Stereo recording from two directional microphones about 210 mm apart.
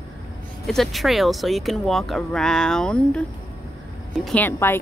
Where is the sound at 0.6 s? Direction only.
Centre (ahead or behind).